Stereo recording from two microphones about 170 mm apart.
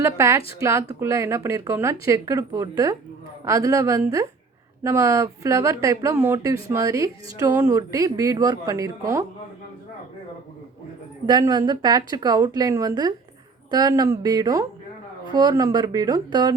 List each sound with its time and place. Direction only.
0.0 s a woman's voice: 15° right (ahead or behind)
11.3 s speech: 25° right (ahead or behind)